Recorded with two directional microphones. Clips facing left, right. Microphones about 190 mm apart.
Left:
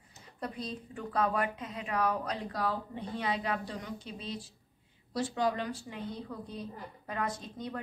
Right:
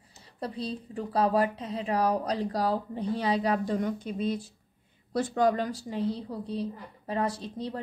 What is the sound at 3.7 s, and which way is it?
A woman's voice, 50° right (ahead or behind).